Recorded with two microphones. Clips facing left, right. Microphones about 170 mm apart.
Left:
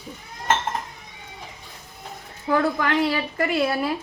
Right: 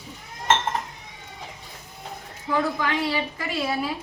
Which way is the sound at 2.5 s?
55° left (ahead or behind).